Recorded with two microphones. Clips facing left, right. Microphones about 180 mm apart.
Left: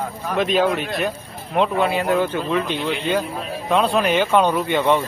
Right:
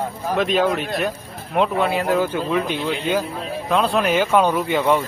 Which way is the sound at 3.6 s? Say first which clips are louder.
Left 1 dB; centre (ahead or behind).